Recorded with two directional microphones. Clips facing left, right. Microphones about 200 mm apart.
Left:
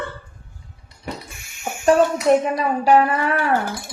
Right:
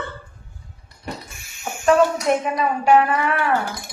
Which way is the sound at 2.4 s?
35° left (ahead or behind).